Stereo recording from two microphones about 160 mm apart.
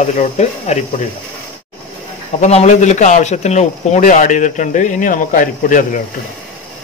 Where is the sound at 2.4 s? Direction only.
45° left (ahead or behind).